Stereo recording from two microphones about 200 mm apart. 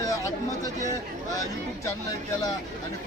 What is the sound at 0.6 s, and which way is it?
Chatter, 15° left (ahead or behind).